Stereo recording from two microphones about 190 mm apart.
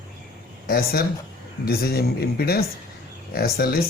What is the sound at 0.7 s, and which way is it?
Speech, 50° left (ahead or behind).